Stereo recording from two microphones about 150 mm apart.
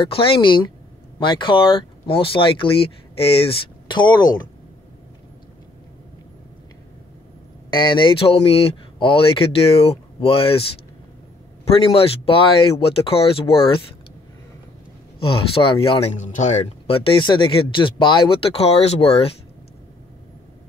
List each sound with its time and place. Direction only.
0.0 s speech: 40° left (ahead or behind)
7.7 s speech: 30° left (ahead or behind)
11.8 s speech: 40° left (ahead or behind)
15.1 s speech: 35° left (ahead or behind)
16.2 s speech: 55° left (ahead or behind)